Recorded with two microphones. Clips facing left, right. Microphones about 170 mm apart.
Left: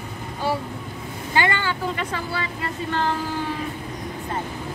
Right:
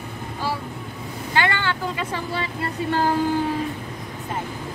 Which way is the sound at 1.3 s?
10° left (ahead or behind).